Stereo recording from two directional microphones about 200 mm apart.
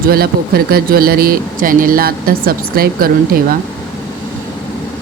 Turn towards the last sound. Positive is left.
turn(degrees=-45)  # may be behind; listen again after turning